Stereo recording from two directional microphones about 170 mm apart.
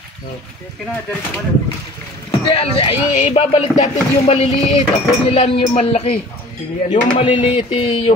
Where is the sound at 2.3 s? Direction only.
30° left (ahead or behind).